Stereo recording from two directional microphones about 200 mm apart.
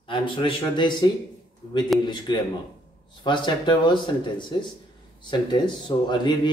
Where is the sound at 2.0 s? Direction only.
20° left (ahead or behind).